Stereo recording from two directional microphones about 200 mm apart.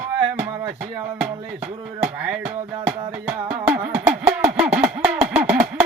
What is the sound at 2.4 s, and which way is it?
Music, 5° right (ahead or behind).